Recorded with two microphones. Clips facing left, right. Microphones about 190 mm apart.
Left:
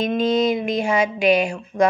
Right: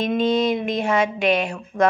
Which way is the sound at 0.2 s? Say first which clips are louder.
Left 1 dB; centre (ahead or behind).